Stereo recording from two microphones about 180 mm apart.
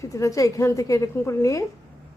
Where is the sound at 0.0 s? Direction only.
15° left (ahead or behind).